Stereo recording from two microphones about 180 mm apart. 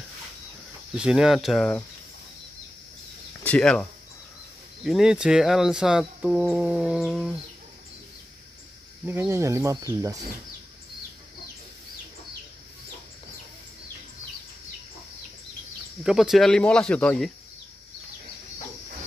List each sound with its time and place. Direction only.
0.9 s speech: 5° right (ahead or behind)
3.4 s speech: 5° left (ahead or behind)
4.8 s speech: centre (ahead or behind)
7.1 s a sound: 5° right (ahead or behind)
9.0 s speech: 10° right (ahead or behind)
16.0 s speech: 5° right (ahead or behind)